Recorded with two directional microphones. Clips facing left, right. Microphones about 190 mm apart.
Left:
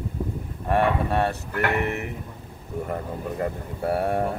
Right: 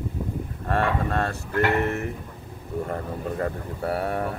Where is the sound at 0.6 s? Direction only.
15° left (ahead or behind).